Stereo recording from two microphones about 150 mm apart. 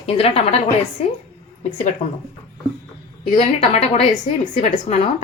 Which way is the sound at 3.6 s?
45° left (ahead or behind).